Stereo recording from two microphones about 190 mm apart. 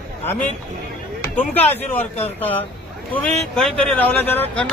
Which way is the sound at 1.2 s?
10° left (ahead or behind).